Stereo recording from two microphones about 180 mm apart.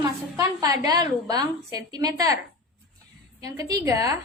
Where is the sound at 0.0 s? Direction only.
20° right (ahead or behind).